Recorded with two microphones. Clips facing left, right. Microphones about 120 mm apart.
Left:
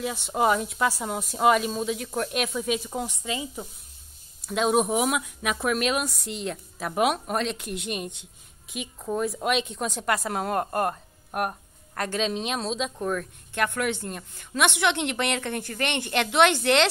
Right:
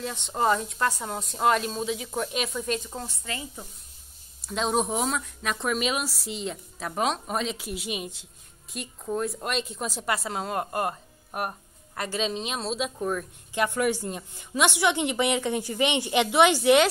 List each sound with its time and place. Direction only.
0.0 s speech: 5° left (ahead or behind)
4.5 s a woman's voice: 5° left (ahead or behind)